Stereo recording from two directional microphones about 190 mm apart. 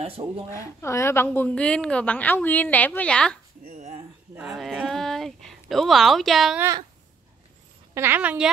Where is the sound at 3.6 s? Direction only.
40° right (ahead or behind).